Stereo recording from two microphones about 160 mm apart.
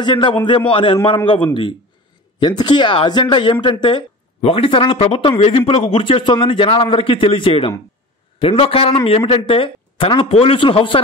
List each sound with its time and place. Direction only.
0.0 s a man's voice: 30° left (ahead or behind)